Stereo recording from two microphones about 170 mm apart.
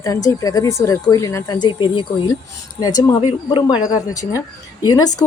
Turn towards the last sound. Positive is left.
turn(degrees=20)  # may be behind; listen again after turning